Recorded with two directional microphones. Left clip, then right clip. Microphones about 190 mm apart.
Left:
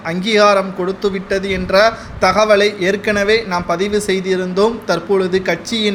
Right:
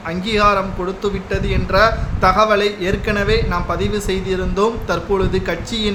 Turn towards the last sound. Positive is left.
turn(degrees=15)  # may be behind; listen again after turning